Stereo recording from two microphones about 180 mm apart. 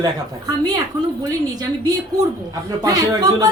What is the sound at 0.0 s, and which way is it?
Speech, 20° right (ahead or behind).